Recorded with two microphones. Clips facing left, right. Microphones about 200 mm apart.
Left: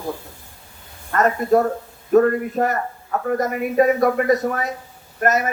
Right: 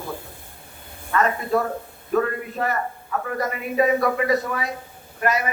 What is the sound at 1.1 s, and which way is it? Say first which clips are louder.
A man's voice: left 4 dB; 45° left (ahead or behind).